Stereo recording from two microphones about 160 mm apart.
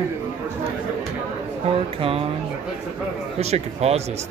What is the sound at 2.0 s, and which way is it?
Speech, 35° right (ahead or behind).